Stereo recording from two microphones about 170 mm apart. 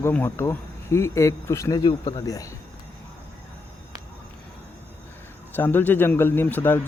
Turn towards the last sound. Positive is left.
turn(degrees=10)  # may be behind; listen again after turning